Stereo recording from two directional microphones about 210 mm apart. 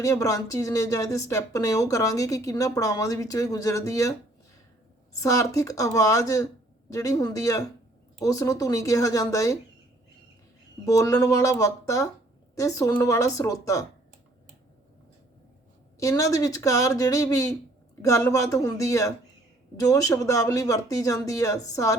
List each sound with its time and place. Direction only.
0.0 s speech: 15° left (ahead or behind)
5.2 s speech: 15° left (ahead or behind)
10.8 s speech: 15° left (ahead or behind)
16.0 s speech: 15° left (ahead or behind)